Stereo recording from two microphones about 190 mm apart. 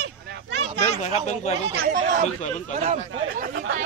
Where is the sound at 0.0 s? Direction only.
65° right (ahead or behind).